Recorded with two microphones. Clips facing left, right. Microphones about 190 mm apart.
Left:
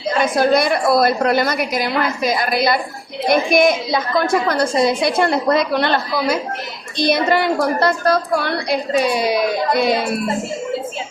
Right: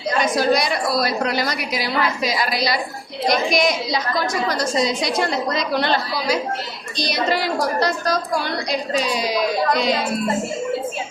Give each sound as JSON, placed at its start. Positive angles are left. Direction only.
{"t": 0.2, "sound": "a woman's voice", "side_deg": 55}